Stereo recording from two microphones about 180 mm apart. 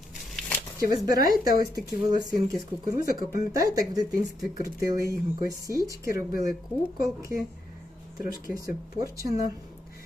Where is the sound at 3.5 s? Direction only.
20° right (ahead or behind).